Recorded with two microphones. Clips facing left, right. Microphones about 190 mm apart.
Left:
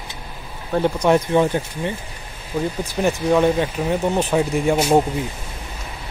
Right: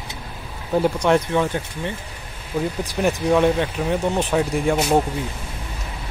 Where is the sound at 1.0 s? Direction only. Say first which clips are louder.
Left 2 dB; 10° left (ahead or behind).